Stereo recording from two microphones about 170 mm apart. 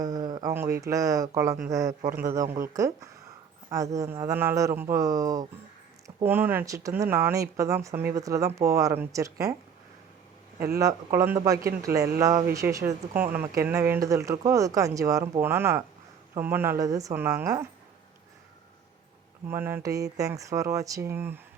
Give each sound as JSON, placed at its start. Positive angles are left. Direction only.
{"t": 0.0, "sound": "a sound", "side_deg": -20}
{"t": 0.5, "sound": "speech", "side_deg": -15}
{"t": 10.8, "sound": "speech", "side_deg": -20}
{"t": 19.5, "sound": "speech", "side_deg": -15}